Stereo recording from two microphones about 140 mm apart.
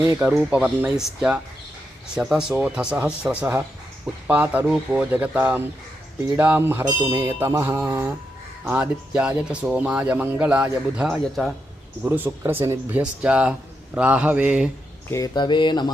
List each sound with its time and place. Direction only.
0.2 s speech: 5° right (ahead or behind)
7.9 s a sound: 20° right (ahead or behind)
8.6 s speech: 10° right (ahead or behind)
12.0 s speech: 15° right (ahead or behind)
15.1 s speech: 30° left (ahead or behind)